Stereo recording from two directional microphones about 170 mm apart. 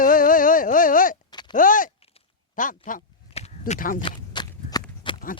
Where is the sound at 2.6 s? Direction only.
50° left (ahead or behind).